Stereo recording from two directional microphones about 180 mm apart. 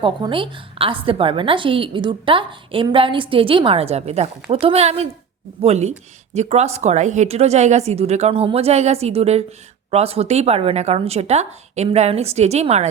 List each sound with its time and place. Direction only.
0.0 s a woman's voice: 30° right (ahead or behind)